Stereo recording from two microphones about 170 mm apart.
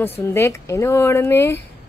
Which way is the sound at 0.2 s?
15° left (ahead or behind).